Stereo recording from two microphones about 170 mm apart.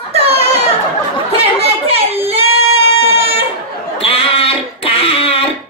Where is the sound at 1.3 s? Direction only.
35° right (ahead or behind).